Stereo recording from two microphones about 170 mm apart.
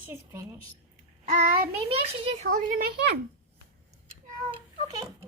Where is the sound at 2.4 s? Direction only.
55° right (ahead or behind).